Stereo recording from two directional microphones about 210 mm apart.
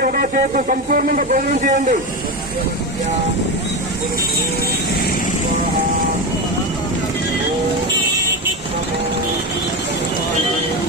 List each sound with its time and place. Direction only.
0.0 s speech: 45° right (ahead or behind)